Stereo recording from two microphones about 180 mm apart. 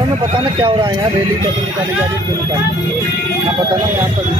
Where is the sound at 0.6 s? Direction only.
25° right (ahead or behind).